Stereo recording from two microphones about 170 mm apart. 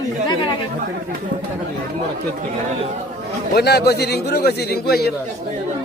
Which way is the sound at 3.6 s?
75° left (ahead or behind).